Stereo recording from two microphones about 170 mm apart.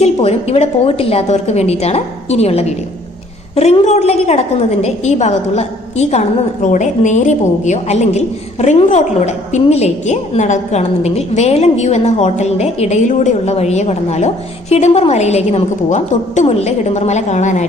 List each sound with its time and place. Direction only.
0.0 s a woman's voice: 40° left (ahead or behind)